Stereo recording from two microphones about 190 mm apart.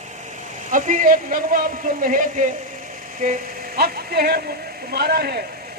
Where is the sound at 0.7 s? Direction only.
45° right (ahead or behind).